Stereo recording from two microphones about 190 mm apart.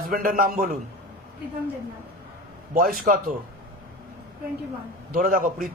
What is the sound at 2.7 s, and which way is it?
Speech, 50° right (ahead or behind).